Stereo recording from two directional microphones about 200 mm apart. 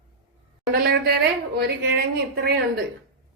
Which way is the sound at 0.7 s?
50° right (ahead or behind).